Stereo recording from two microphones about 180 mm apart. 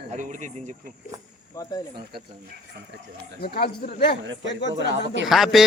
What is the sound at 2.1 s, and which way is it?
Speech, 60° right (ahead or behind).